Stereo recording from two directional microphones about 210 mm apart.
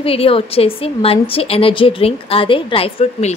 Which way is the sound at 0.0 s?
25° left (ahead or behind).